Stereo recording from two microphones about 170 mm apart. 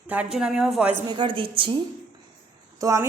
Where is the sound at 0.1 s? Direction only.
5° right (ahead or behind).